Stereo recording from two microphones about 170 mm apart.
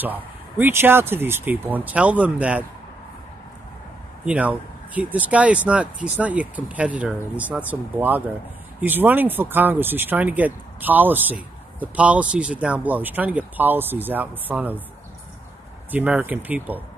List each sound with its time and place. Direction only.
0.0 s speech: 10° right (ahead or behind)
4.3 s speech: 10° right (ahead or behind)
15.9 s speech: 10° right (ahead or behind)